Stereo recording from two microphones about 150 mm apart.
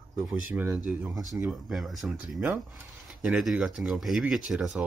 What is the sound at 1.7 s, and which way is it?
Speech, centre (ahead or behind).